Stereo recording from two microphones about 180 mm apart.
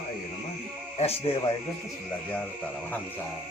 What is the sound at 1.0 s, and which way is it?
Speech, 35° left (ahead or behind).